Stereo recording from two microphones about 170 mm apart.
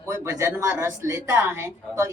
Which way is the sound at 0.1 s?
15° right (ahead or behind).